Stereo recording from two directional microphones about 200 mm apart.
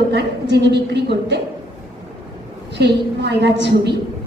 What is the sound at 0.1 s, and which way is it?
A woman's voice, 60° right (ahead or behind).